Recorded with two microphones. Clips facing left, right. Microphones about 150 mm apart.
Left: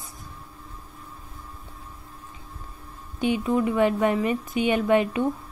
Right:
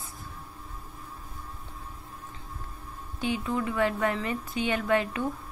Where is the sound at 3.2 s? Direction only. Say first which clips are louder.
Left 6 dB; 20° left (ahead or behind).